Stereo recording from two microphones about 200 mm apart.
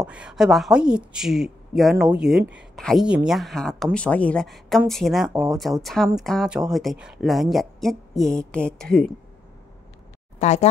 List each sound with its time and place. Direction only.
0.0 s a woman's voice: 5° right (ahead or behind)
10.4 s speech: 35° left (ahead or behind)